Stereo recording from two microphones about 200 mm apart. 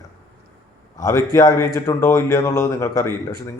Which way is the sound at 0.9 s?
15° left (ahead or behind).